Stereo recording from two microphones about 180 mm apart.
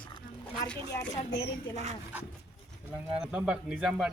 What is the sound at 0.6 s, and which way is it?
Speech, 10° left (ahead or behind).